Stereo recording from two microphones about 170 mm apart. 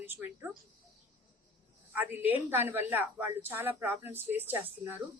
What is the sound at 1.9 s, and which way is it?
A woman's voice, 10° right (ahead or behind).